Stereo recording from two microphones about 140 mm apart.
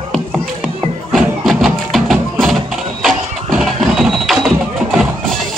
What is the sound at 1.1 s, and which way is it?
Music, centre (ahead or behind).